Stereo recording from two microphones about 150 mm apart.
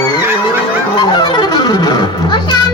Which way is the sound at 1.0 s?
30° left (ahead or behind).